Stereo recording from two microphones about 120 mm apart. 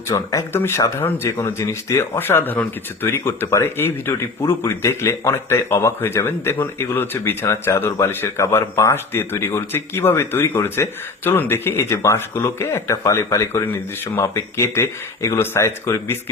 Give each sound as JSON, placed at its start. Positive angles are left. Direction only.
{"t": 0.1, "sound": "speech", "side_deg": 25}